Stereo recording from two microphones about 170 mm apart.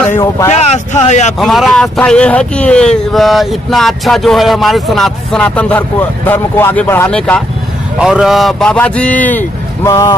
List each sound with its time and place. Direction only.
0.1 s speech: 15° left (ahead or behind)
0.5 s speech: 40° left (ahead or behind)
1.4 s a man's voice: centre (ahead or behind); by 10.1 s 20° left (ahead or behind)